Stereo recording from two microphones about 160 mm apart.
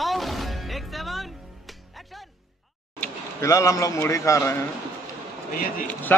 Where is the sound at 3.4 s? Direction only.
20° left (ahead or behind).